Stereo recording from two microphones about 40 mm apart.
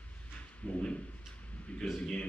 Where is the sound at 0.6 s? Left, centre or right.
Left.